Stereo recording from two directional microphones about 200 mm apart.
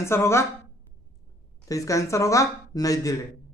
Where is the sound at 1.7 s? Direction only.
15° left (ahead or behind).